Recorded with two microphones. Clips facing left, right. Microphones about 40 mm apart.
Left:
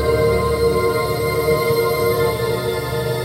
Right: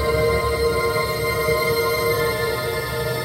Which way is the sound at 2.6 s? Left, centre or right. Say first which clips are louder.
Left 3 dB; centre.